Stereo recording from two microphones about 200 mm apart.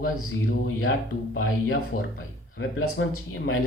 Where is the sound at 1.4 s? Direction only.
90° left.